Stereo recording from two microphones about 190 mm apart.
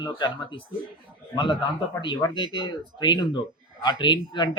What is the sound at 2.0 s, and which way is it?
Speech, 25° left (ahead or behind).